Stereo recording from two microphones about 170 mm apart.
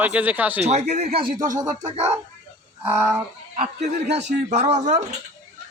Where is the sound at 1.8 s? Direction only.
40° right (ahead or behind).